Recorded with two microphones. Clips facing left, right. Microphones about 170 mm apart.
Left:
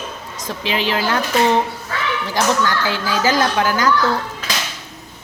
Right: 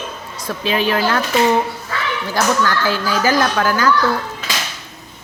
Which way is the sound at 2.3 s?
20° left (ahead or behind).